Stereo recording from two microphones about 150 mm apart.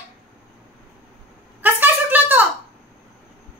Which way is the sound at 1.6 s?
10° right (ahead or behind).